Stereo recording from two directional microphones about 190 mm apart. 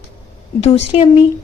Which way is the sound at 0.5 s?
35° left (ahead or behind).